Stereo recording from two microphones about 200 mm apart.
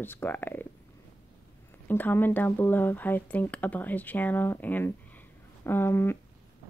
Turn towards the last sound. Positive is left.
turn(degrees=10)  # may be behind; listen again after turning